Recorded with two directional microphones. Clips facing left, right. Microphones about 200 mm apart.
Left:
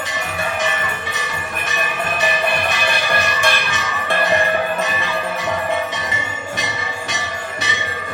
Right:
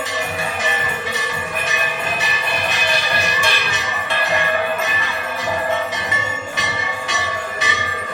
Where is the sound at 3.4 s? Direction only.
50° left (ahead or behind).